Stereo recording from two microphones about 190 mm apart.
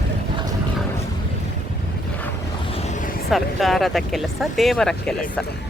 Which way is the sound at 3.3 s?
Centre (ahead or behind).